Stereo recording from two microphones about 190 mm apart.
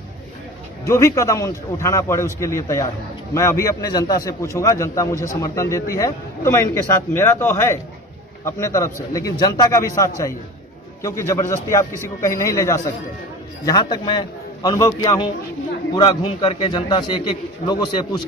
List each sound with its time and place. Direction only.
0.8 s a man's voice: 15° left (ahead or behind)